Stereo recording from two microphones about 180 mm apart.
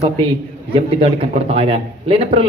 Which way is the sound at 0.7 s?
30° right (ahead or behind).